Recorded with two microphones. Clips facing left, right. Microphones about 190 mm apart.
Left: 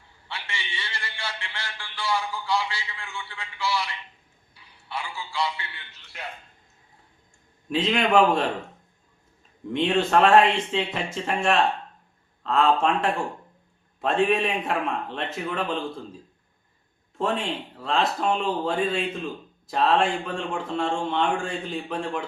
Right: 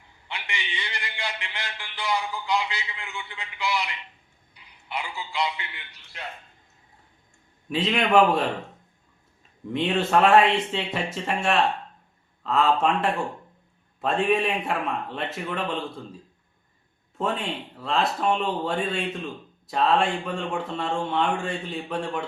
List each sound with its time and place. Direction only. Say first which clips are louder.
0.3 s a man's voice: right 1 dB; 20° right (ahead or behind)
7.7 s speech: even; centre (ahead or behind)
9.7 s speech: left 1 dB; centre (ahead or behind)
17.2 s speech: left 1 dB; centre (ahead or behind)